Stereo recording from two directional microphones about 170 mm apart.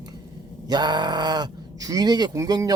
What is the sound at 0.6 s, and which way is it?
Speech, 25° right (ahead or behind).